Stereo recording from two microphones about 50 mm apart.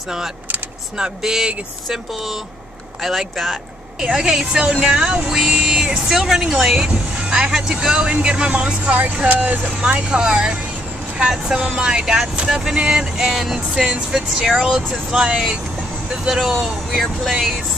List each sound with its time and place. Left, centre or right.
0.9 s speech: centre
5.5 s vehicle: centre
6.0 s speech: centre
8.8 s speech: right; by 14.5 s centre
14.5 s speech: centre